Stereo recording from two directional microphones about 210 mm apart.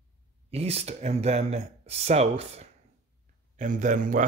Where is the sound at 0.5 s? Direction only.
30° right (ahead or behind).